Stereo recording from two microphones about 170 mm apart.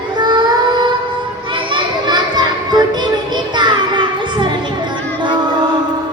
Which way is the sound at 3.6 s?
25° right (ahead or behind).